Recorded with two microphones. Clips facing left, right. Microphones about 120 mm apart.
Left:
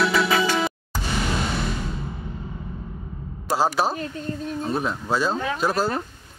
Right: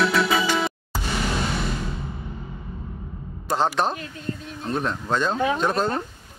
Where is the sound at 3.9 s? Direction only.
35° left (ahead or behind).